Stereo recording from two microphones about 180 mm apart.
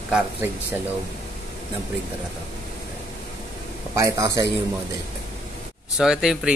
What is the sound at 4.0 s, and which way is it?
Speech, 20° right (ahead or behind).